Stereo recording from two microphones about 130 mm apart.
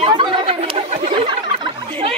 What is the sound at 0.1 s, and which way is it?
Chatter, 40° right (ahead or behind).